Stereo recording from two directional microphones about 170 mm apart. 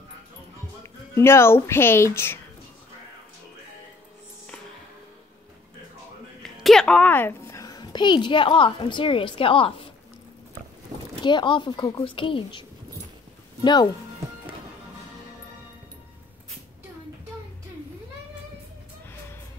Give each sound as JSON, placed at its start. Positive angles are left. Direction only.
{"t": 1.1, "sound": "speech", "side_deg": 15}
{"t": 6.4, "sound": "a woman's voice", "side_deg": 0}
{"t": 10.9, "sound": "a sound", "side_deg": -25}
{"t": 11.2, "sound": "a woman's voice", "side_deg": 30}